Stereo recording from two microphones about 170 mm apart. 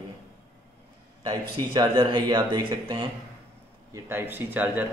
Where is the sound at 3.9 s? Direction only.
15° right (ahead or behind).